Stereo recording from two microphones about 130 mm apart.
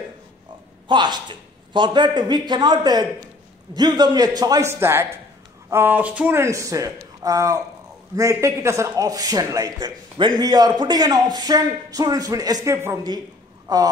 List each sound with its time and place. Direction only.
0.8 s a man's voice: 35° right (ahead or behind)